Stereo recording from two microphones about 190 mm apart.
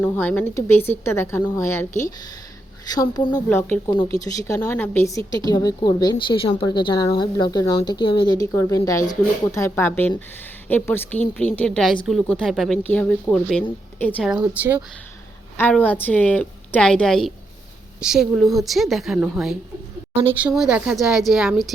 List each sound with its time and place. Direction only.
0.0 s a woman's voice: 10° left (ahead or behind)
14.3 s speech: 5° right (ahead or behind)
15.5 s a woman's voice: 10° left (ahead or behind)